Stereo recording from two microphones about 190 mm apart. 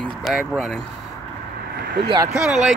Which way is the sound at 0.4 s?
Centre (ahead or behind).